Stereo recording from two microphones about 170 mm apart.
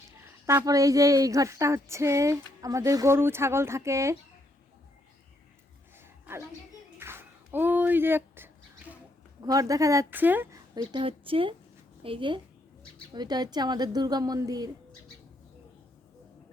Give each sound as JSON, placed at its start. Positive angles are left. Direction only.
{"t": 0.4, "sound": "a woman's voice", "side_deg": -20}
{"t": 6.0, "sound": "a sound", "side_deg": -15}
{"t": 9.5, "sound": "a woman's voice", "side_deg": -20}